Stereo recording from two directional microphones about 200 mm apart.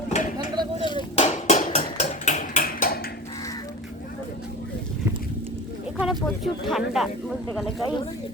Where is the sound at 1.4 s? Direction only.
40° left (ahead or behind).